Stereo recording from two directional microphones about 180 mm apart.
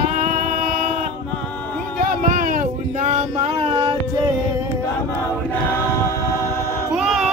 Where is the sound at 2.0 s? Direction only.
50° right (ahead or behind); by 3.9 s 30° right (ahead or behind).